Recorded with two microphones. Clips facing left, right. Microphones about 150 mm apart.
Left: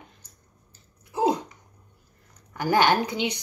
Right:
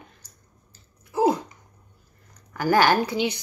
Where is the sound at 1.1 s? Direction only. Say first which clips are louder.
Right 2 dB; 20° left (ahead or behind).